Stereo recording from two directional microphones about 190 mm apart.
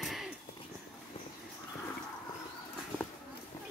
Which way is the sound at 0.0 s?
Centre (ahead or behind).